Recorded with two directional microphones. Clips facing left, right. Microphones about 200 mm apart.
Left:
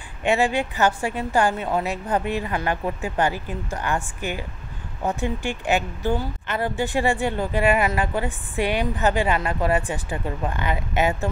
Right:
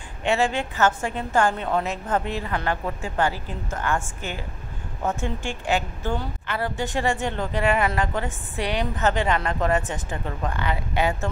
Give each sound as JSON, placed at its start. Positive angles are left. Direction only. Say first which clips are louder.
{"t": 0.2, "sound": "a woman's voice", "louder": "left 2 dB", "side_deg": 15}